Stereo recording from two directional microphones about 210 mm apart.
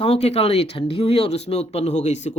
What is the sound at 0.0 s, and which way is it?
Speech, 30° left (ahead or behind).